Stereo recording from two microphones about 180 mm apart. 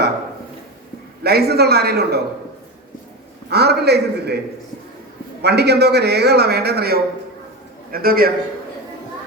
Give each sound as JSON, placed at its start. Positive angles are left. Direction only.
{"t": 1.2, "sound": "a man's voice", "side_deg": -65}
{"t": 3.5, "sound": "a man's voice", "side_deg": -65}
{"t": 5.4, "sound": "a man's voice", "side_deg": -65}